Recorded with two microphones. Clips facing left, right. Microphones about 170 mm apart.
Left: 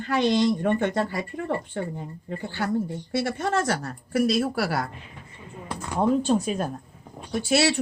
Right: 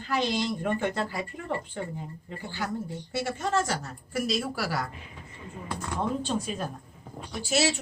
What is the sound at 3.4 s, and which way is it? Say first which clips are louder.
A woman's voice: left 3 dB; 60° left (ahead or behind).